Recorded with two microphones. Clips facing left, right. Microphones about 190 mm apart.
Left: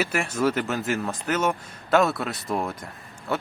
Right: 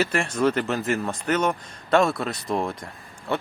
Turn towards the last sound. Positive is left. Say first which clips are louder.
# right 1 dB
turn(degrees=0)  # may be behind; listen again after turning